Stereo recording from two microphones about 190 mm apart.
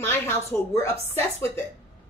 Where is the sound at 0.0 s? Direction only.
15° left (ahead or behind).